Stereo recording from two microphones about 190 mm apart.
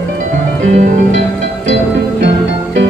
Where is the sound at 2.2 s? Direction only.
70° right (ahead or behind).